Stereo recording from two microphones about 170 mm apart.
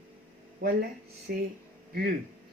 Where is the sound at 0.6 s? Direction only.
60° right (ahead or behind).